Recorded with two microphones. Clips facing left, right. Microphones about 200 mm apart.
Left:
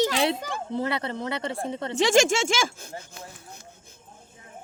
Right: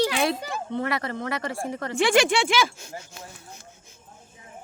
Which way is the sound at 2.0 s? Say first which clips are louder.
Even; 45° left (ahead or behind).